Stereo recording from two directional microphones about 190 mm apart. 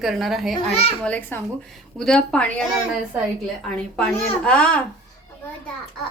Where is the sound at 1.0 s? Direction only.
10° left (ahead or behind).